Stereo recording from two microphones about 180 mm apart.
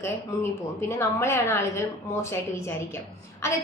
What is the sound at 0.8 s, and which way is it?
A woman's voice, 15° left (ahead or behind).